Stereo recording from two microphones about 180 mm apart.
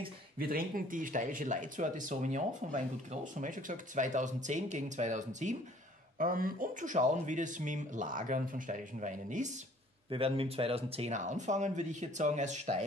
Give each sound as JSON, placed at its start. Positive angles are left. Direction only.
{"t": 0.4, "sound": "speech", "side_deg": -55}
{"t": 10.0, "sound": "speech", "side_deg": -30}